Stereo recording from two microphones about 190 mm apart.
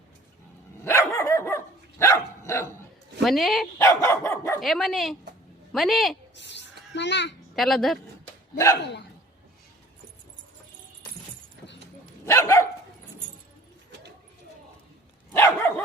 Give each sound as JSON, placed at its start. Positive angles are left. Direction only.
{"t": 0.9, "sound": "dog", "side_deg": 15}
{"t": 3.2, "sound": "speech", "side_deg": 0}
{"t": 3.8, "sound": "dog", "side_deg": 15}
{"t": 4.6, "sound": "speech", "side_deg": 0}
{"t": 6.3, "sound": "a sound", "side_deg": 65}
{"t": 7.5, "sound": "speech", "side_deg": 0}
{"t": 8.5, "sound": "dog", "side_deg": 15}
{"t": 8.8, "sound": "speech", "side_deg": 65}
{"t": 12.2, "sound": "dog", "side_deg": 15}
{"t": 15.3, "sound": "dog", "side_deg": 10}